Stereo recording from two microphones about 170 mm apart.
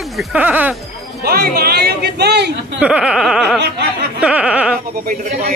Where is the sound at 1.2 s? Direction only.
65° right (ahead or behind).